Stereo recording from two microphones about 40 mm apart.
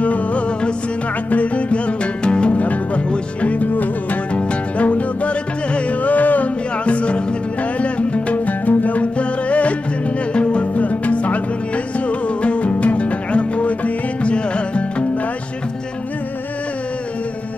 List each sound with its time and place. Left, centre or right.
0.0 s music: left
2.5 s music: left
4.3 s music: left
6.8 s music: left